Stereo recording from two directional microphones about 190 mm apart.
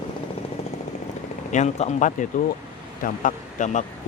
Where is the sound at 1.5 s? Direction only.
40° left (ahead or behind).